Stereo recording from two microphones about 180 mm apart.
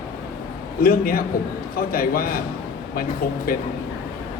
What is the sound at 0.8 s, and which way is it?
Speech, 55° left (ahead or behind).